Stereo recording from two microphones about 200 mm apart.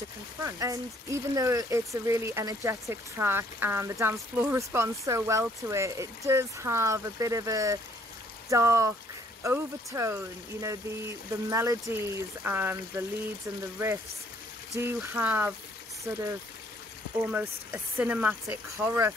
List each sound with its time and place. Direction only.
0.4 s speech: 15° right (ahead or behind)
14.7 s speech: 10° right (ahead or behind)
17.2 s speech: 10° right (ahead or behind)